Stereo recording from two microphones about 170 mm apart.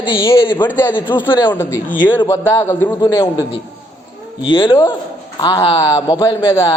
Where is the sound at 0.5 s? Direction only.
10° left (ahead or behind).